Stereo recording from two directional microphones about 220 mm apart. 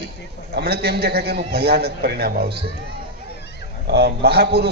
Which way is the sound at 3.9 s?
50° right (ahead or behind).